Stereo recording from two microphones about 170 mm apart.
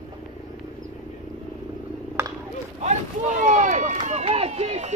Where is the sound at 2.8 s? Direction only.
45° right (ahead or behind).